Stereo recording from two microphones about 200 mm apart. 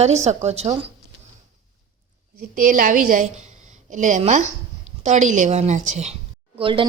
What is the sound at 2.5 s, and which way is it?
A woman's voice, 40° right (ahead or behind).